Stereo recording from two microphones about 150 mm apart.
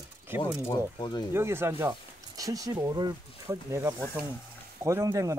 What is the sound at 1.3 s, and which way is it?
Speech, 15° right (ahead or behind).